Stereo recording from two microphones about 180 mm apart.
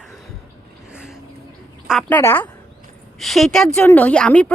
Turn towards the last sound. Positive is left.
turn(degrees=5)  # may be behind; listen again after turning